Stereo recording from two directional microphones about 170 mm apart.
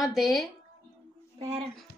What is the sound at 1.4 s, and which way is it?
Speech, 35° right (ahead or behind).